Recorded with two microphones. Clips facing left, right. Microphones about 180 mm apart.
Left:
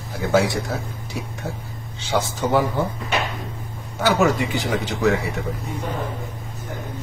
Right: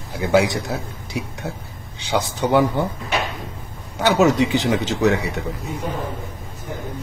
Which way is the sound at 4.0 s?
20° right (ahead or behind).